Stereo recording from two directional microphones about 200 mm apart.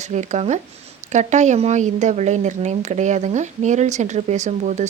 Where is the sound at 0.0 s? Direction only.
35° right (ahead or behind).